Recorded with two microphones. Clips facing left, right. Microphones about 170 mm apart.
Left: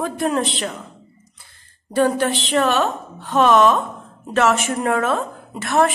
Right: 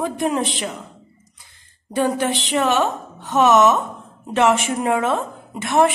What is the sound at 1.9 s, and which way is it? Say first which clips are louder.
A woman's voice: left 2 dB; 15° right (ahead or behind).